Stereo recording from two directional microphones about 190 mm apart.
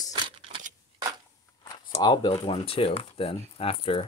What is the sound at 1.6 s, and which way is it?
Speech, 25° left (ahead or behind).